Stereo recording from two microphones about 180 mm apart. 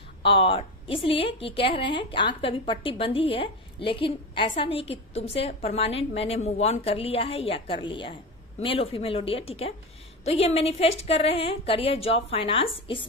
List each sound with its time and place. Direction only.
0.2 s a woman's voice: 30° left (ahead or behind)